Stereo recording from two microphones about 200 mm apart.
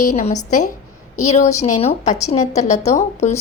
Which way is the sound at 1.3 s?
35° left (ahead or behind).